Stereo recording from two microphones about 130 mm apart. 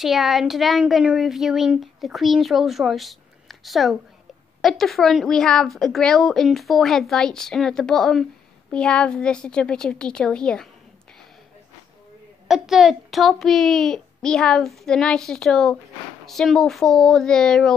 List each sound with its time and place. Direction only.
0.0 s a woman's voice: centre (ahead or behind)
12.4 s speech: 5° right (ahead or behind)